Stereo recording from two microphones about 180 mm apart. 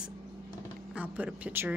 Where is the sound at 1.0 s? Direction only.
10° right (ahead or behind).